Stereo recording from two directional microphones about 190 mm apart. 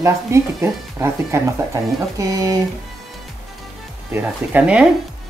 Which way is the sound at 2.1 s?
20° right (ahead or behind).